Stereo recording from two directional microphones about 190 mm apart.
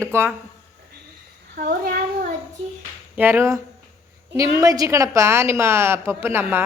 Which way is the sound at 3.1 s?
10° right (ahead or behind).